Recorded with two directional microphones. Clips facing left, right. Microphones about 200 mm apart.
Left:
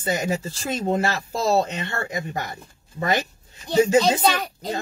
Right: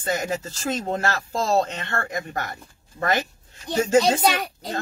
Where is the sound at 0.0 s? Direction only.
15° left (ahead or behind).